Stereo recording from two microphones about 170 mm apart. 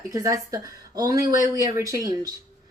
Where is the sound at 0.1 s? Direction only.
20° right (ahead or behind).